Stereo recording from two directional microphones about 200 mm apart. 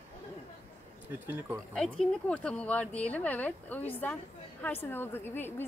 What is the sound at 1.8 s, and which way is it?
Speech, centre (ahead or behind).